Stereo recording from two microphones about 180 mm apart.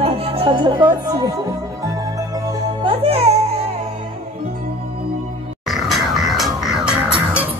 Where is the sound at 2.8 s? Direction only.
30° right (ahead or behind).